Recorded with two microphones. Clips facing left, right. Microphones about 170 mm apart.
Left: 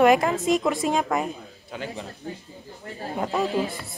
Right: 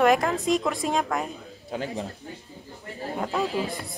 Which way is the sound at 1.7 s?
40° right (ahead or behind).